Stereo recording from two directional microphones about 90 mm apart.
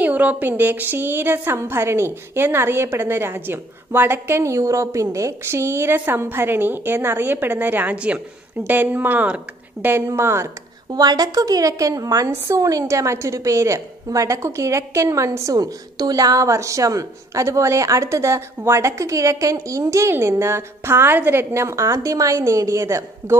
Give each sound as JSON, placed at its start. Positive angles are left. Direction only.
{"t": 0.0, "sound": "a woman's voice", "side_deg": -20}
{"t": 10.9, "sound": "a woman's voice", "side_deg": -50}